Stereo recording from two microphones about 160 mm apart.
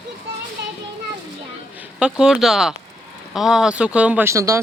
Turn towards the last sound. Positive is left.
turn(degrees=-20)  # may be behind; listen again after turning